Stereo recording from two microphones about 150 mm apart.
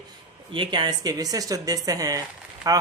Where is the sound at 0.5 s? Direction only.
35° right (ahead or behind).